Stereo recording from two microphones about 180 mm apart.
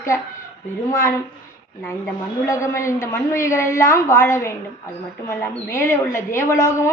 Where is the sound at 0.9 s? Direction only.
15° left (ahead or behind).